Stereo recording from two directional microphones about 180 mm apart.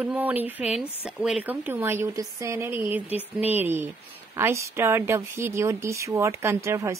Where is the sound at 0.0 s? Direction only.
10° right (ahead or behind).